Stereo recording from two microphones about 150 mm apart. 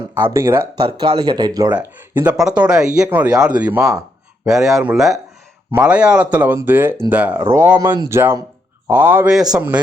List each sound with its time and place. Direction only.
0.3 s speech: 20° right (ahead or behind)
0.9 s speech: 30° right (ahead or behind)
1.7 s a man's voice: 10° right (ahead or behind)